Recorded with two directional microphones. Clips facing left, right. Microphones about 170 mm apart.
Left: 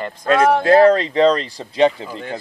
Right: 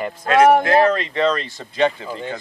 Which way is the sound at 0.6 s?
30° left (ahead or behind).